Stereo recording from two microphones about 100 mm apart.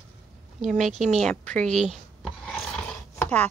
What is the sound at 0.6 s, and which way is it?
Speech, 5° right (ahead or behind).